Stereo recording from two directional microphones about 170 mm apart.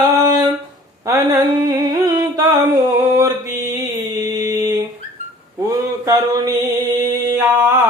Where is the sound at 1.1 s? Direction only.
20° right (ahead or behind).